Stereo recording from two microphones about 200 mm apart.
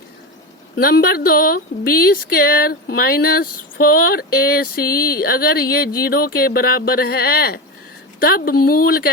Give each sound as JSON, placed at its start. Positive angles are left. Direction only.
{"t": 0.8, "sound": "speech", "side_deg": 50}